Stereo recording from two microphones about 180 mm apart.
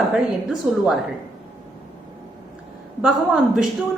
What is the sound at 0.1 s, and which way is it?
Speech, 5° right (ahead or behind).